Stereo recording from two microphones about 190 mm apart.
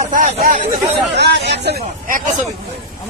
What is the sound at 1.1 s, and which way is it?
Speech, 65° right (ahead or behind).